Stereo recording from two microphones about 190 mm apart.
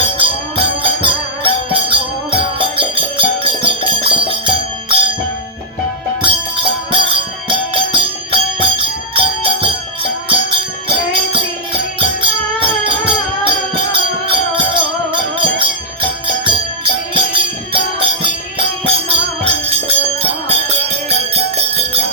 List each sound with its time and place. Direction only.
0.0 s music: 25° right (ahead or behind)
6.2 s music: 25° right (ahead or behind)